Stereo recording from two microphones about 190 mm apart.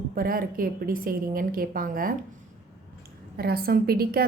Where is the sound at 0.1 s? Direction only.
50° right (ahead or behind).